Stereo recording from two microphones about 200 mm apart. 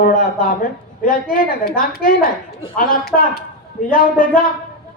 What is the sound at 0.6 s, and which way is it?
A woman's voice, 45° left (ahead or behind).